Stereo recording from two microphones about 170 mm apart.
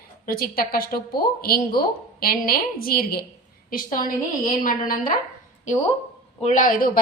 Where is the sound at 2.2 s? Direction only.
60° left (ahead or behind).